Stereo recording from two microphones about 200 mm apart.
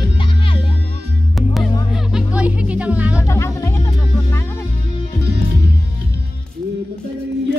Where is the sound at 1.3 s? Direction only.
Centre (ahead or behind).